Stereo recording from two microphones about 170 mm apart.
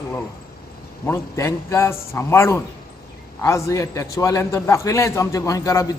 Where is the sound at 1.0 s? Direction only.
15° left (ahead or behind).